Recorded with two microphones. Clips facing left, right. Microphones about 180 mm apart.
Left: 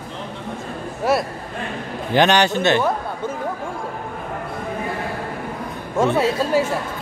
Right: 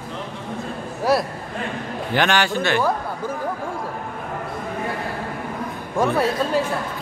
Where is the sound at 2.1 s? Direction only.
20° left (ahead or behind).